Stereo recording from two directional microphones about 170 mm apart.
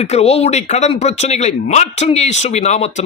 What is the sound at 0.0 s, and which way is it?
Speech, 40° left (ahead or behind).